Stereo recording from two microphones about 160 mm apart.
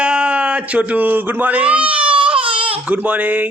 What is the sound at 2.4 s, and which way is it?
Baby cry, 35° right (ahead or behind).